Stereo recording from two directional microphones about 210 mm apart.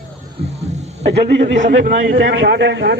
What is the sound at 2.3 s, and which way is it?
Speech, 55° right (ahead or behind).